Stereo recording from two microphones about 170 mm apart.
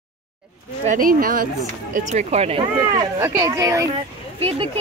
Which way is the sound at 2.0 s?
45° right (ahead or behind).